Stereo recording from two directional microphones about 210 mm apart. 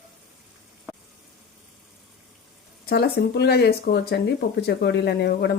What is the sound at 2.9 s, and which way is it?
Speech, 50° left (ahead or behind).